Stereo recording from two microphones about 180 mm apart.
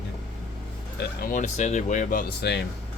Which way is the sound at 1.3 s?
40° left (ahead or behind).